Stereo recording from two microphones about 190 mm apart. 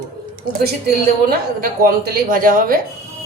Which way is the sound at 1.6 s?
50° right (ahead or behind).